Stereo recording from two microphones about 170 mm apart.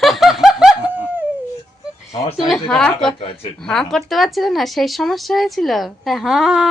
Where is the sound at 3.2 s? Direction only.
30° left (ahead or behind).